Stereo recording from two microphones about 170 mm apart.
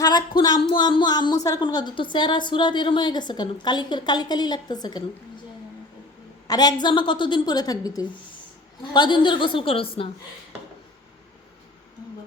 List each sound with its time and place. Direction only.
0.0 s a woman's voice: 25° left (ahead or behind)
6.5 s a woman's voice: 25° left (ahead or behind)